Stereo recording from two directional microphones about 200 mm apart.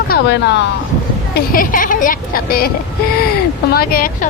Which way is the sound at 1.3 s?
45° left (ahead or behind).